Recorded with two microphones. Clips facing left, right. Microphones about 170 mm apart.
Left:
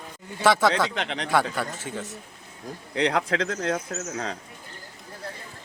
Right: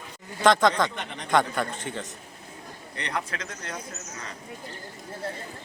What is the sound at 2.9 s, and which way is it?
Speech, 90° left.